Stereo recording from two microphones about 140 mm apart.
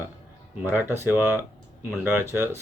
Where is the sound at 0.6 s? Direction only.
15° right (ahead or behind).